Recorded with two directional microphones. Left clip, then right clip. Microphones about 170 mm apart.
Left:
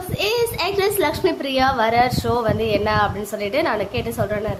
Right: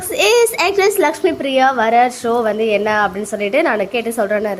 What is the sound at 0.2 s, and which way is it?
A woman's voice, 40° right (ahead or behind).